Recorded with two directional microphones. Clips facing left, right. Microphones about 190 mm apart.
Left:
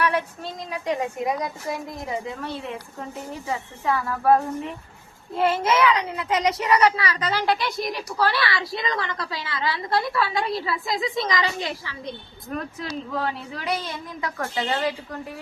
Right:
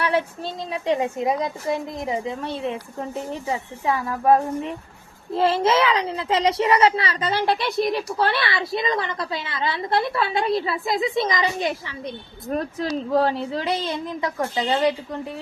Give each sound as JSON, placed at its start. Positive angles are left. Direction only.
{"t": 0.0, "sound": "a woman's voice", "side_deg": -30}
{"t": 3.8, "sound": "a woman's voice", "side_deg": -15}
{"t": 5.3, "sound": "a woman's voice", "side_deg": -30}
{"t": 12.5, "sound": "a woman's voice", "side_deg": -35}